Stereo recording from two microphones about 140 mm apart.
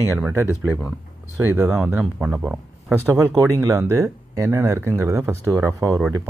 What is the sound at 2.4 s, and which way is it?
Speech, 15° right (ahead or behind).